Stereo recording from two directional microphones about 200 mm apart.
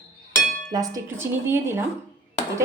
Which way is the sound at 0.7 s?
20° right (ahead or behind).